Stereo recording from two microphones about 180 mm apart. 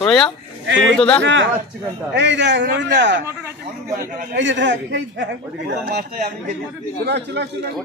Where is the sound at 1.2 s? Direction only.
90° right.